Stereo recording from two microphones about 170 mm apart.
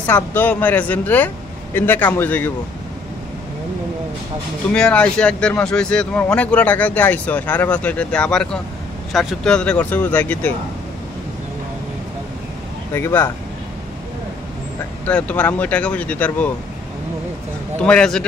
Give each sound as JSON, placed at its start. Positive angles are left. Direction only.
{"t": 0.0, "sound": "speech", "side_deg": 10}
{"t": 4.7, "sound": "a man's voice", "side_deg": 5}
{"t": 12.9, "sound": "speech", "side_deg": 15}
{"t": 15.0, "sound": "speech", "side_deg": 10}
{"t": 17.8, "sound": "a man's voice", "side_deg": 5}